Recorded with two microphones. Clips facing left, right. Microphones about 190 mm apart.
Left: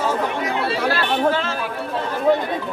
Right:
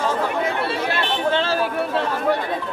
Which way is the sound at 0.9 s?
25° right (ahead or behind).